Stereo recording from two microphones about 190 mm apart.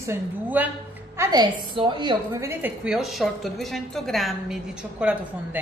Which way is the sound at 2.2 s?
10° right (ahead or behind).